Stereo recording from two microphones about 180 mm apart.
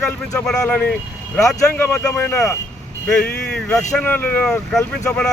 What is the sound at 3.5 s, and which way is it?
Speech, 5° left (ahead or behind).